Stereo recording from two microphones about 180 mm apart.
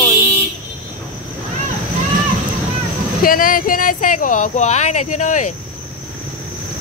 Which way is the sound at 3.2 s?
50° left (ahead or behind).